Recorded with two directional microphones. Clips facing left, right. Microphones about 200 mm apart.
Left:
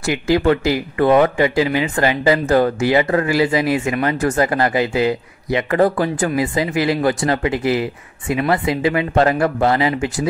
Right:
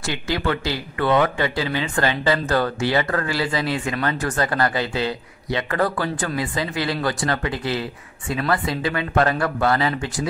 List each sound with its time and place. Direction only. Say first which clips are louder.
0.3 s speech: left 9 dB; 30° left (ahead or behind)
0.7 s speech: left 7 dB; 15° left (ahead or behind)